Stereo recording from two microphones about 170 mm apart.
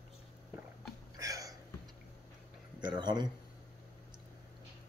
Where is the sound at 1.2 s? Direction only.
20° right (ahead or behind).